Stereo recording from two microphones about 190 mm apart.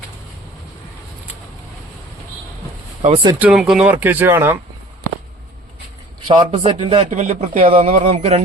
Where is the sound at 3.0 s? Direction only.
30° right (ahead or behind).